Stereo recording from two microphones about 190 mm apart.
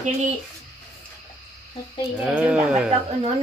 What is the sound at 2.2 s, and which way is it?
Speech, 5° right (ahead or behind).